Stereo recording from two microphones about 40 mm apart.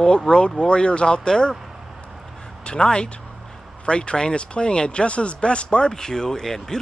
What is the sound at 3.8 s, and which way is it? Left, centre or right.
Speech, left.